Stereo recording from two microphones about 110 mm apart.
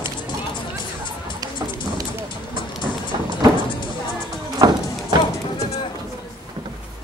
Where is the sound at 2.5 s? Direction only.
45° left (ahead or behind).